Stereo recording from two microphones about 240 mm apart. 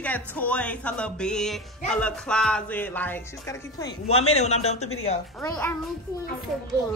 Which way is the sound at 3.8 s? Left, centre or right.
Left.